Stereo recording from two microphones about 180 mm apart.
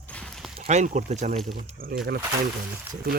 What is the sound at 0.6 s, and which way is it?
Speech, 40° right (ahead or behind).